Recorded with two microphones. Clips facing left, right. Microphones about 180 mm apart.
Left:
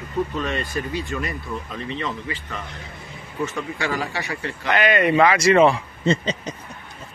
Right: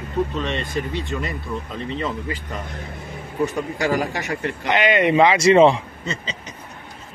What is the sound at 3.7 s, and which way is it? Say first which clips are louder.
Speech: right 4 dB; 40° right (ahead or behind).